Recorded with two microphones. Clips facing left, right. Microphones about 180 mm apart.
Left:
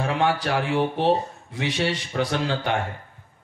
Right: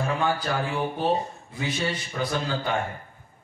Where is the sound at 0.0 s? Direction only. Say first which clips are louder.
Left 3 dB; 75° left (ahead or behind).